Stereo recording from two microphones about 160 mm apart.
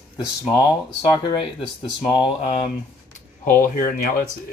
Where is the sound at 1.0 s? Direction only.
30° left (ahead or behind).